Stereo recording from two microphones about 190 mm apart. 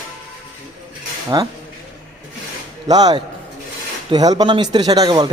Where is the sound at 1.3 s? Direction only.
20° right (ahead or behind).